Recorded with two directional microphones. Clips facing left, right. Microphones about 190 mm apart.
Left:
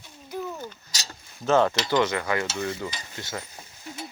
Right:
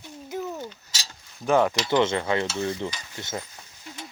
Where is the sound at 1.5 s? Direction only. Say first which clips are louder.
Even; 15° right (ahead or behind).